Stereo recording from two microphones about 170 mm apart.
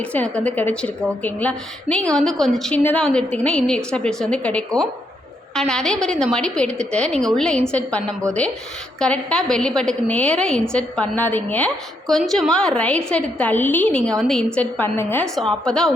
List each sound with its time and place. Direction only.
0.0 s a woman's voice: 10° left (ahead or behind)